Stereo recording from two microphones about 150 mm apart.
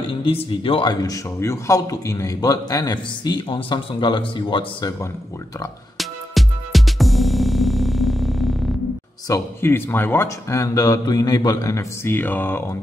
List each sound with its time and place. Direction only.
0.0 s speech: 35° left (ahead or behind)
5.9 s music: centre (ahead or behind)
9.3 s speech: 15° left (ahead or behind)